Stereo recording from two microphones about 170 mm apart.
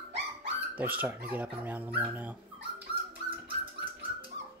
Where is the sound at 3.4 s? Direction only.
30° right (ahead or behind).